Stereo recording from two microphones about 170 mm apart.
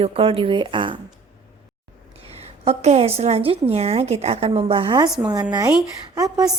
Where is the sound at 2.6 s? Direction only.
40° right (ahead or behind).